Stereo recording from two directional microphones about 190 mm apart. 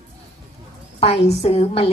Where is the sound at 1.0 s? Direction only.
35° left (ahead or behind).